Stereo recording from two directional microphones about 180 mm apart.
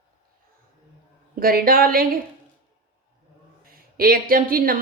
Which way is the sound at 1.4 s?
55° right (ahead or behind).